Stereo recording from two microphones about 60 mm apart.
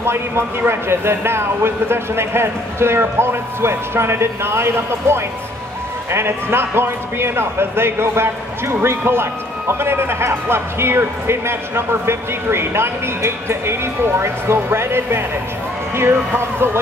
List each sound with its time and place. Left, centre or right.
0.0 s a man's voice: right